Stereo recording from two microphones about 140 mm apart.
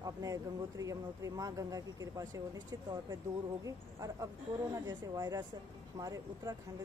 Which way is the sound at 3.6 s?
25° right (ahead or behind).